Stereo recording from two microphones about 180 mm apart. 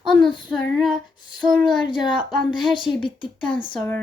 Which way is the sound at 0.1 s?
Centre (ahead or behind).